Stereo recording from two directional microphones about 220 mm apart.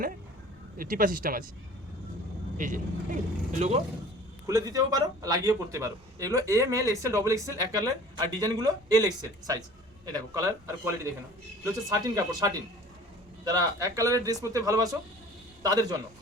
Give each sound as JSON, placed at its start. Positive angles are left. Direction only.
{"t": 0.8, "sound": "speech", "side_deg": -40}
{"t": 2.6, "sound": "speech", "side_deg": -35}
{"t": 4.4, "sound": "a man's voice", "side_deg": -15}
{"t": 10.1, "sound": "a man's voice", "side_deg": -15}